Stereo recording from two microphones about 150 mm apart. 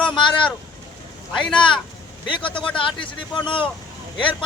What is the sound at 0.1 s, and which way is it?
Vehicle, 30° left (ahead or behind).